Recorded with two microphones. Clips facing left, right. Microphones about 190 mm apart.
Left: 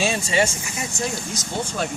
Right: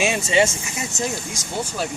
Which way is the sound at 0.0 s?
20° right (ahead or behind).